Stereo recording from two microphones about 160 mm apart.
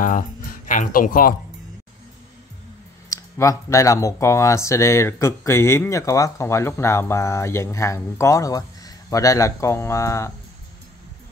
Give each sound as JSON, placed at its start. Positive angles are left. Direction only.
{"t": 0.7, "sound": "speech", "side_deg": 55}
{"t": 3.1, "sound": "speech", "side_deg": 20}